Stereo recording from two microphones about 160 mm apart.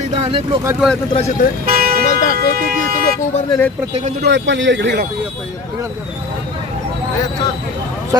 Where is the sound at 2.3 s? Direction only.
65° right (ahead or behind).